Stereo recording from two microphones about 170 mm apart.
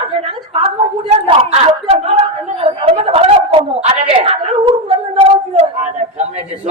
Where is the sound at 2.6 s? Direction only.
35° right (ahead or behind).